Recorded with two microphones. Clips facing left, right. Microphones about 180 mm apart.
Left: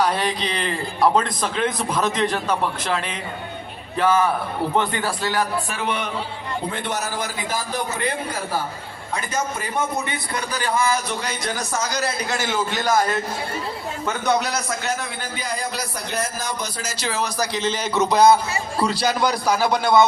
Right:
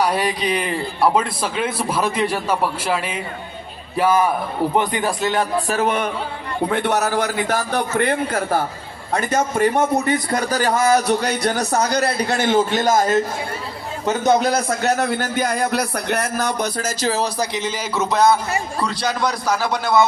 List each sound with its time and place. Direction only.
0.0 s a man's voice: 10° right (ahead or behind)
5.5 s a man's voice: 40° right (ahead or behind)
6.7 s speech: 65° right (ahead or behind)
9.7 s a man's voice: 40° right (ahead or behind)
10.9 s music: 70° right (ahead or behind)
11.2 s a man's voice: 40° right (ahead or behind)
11.8 s speech: 60° right (ahead or behind)
12.5 s a man's voice: 45° right (ahead or behind); by 15.1 s 65° right (ahead or behind)
15.2 s speech: 55° right (ahead or behind); by 17.5 s 35° right (ahead or behind)
17.5 s a man's voice: 15° right (ahead or behind)
17.9 s speech: 5° right (ahead or behind)